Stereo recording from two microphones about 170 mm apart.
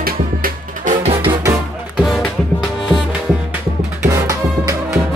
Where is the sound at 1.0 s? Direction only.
30° right (ahead or behind).